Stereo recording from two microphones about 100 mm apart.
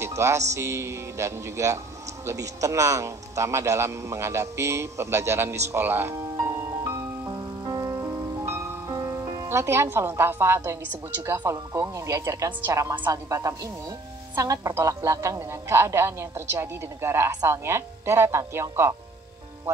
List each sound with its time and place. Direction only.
0.0 s a man's voice: 30° right (ahead or behind)
6.3 s music: 30° right (ahead or behind)
11.2 s a man's voice: 30° right (ahead or behind)